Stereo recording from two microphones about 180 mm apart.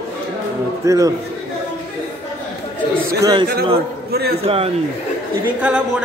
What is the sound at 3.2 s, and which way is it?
Speech, 20° right (ahead or behind).